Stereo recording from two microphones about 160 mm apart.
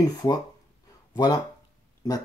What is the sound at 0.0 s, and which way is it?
Speech, 25° left (ahead or behind).